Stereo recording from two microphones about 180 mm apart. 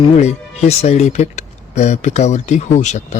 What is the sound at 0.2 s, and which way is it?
Speech, 35° left (ahead or behind).